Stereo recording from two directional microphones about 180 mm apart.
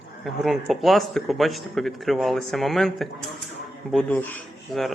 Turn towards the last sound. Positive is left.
turn(degrees=5)  # may be behind; listen again after turning